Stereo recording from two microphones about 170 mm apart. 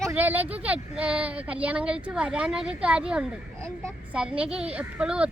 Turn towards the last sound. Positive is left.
turn(degrees=-5)  # may be behind; listen again after turning